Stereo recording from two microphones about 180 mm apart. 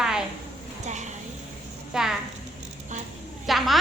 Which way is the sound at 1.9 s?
5° right (ahead or behind).